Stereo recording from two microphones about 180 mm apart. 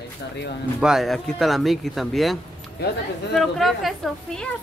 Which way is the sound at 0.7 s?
5° right (ahead or behind).